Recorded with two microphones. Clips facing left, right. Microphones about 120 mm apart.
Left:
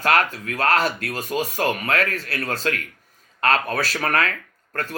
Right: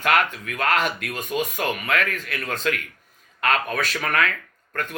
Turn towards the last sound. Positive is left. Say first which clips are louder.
# left 1 dB
turn(degrees=35)  # may be behind; listen again after turning